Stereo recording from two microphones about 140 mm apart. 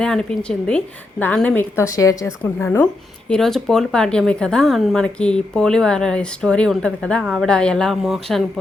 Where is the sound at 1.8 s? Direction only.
25° left (ahead or behind).